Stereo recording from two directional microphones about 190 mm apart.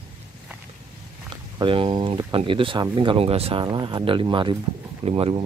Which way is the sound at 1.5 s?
25° right (ahead or behind).